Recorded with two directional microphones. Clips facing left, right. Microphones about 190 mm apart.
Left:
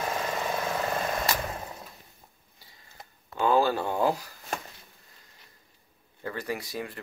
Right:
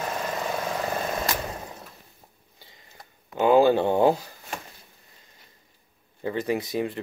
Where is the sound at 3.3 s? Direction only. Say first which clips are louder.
Right 6 dB; 20° right (ahead or behind).